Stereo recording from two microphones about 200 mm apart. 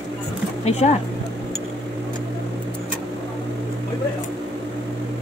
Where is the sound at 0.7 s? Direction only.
35° left (ahead or behind).